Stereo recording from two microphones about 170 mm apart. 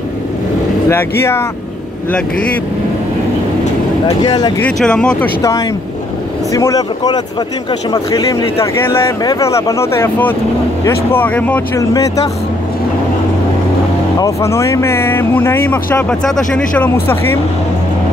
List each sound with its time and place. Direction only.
0.8 s speech: 15° left (ahead or behind)
4.2 s speech: 25° left (ahead or behind)
4.6 s speech: 5° left (ahead or behind)
6.5 s speech: 20° left (ahead or behind)
14.2 s speech: 15° left (ahead or behind)